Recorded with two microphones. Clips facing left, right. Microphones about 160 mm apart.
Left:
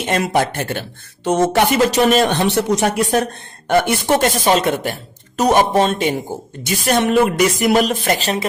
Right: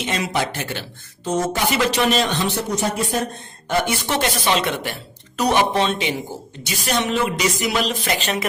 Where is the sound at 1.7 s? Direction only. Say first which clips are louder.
Left 5 dB; 45° left (ahead or behind); by 3.2 s 70° left (ahead or behind).